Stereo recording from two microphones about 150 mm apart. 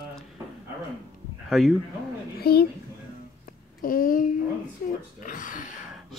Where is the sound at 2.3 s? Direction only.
90° left.